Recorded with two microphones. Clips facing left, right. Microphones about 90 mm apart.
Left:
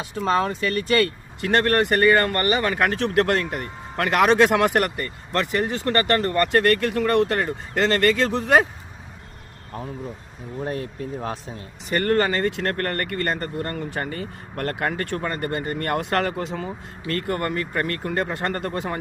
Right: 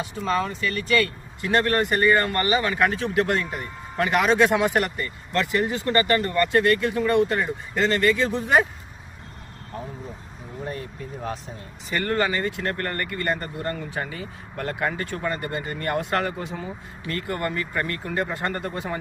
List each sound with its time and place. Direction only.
0.0 s speech: 55° left (ahead or behind); by 8.6 s 80° left
10.7 s speech: 55° left (ahead or behind); by 16.6 s 75° left (ahead or behind)
17.1 s speech: 50° left (ahead or behind)